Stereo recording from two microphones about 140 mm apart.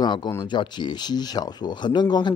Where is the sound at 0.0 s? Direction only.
30° left (ahead or behind).